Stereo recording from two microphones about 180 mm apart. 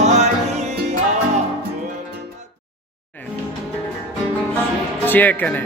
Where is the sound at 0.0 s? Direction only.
40° right (ahead or behind).